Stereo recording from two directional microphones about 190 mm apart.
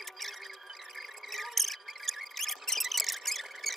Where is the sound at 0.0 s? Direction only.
Centre (ahead or behind).